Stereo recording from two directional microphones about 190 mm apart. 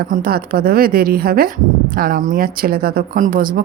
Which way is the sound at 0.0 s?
50° right (ahead or behind).